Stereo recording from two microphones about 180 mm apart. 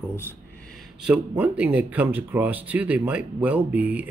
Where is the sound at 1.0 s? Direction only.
5° right (ahead or behind).